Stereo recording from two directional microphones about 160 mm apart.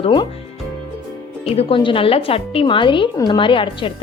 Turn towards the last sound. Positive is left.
turn(degrees=30)  # may be behind; listen again after turning